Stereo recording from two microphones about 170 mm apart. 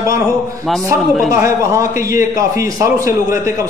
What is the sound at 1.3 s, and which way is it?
A man's voice, 15° right (ahead or behind).